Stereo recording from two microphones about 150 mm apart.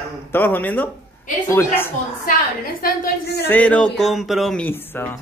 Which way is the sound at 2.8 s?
85° left.